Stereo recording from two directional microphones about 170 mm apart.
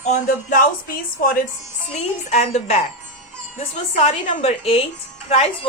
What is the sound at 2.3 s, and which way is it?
Speech, 40° left (ahead or behind).